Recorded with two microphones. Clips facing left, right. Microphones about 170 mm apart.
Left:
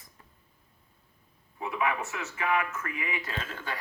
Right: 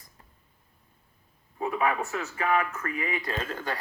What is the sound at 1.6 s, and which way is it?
Speech, 40° right (ahead or behind).